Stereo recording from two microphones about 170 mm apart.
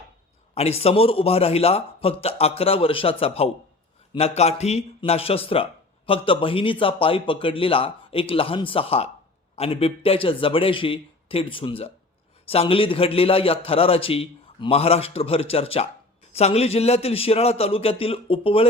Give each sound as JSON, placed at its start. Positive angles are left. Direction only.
{"t": 0.5, "sound": "a man's voice", "side_deg": 35}